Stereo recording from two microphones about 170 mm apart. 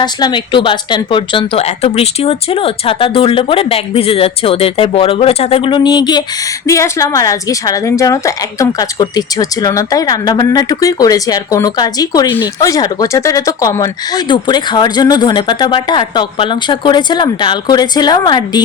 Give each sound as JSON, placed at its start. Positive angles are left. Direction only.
{"t": 0.0, "sound": "speech", "side_deg": 25}